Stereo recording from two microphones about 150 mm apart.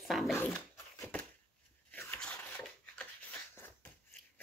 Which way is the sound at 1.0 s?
10° left (ahead or behind).